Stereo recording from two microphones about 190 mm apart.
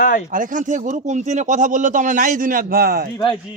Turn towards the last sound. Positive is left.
turn(degrees=-50)  # may be behind; listen again after turning